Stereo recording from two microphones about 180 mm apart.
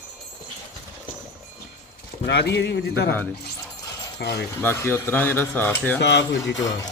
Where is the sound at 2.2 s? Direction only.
65° left (ahead or behind).